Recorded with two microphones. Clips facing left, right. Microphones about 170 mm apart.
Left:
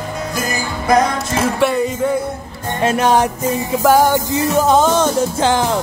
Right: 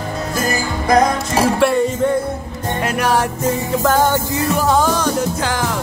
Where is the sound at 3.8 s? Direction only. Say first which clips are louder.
Left 4 dB; 10° left (ahead or behind).